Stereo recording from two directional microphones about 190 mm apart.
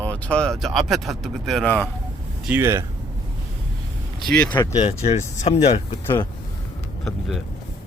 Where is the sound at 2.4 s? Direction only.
10° right (ahead or behind).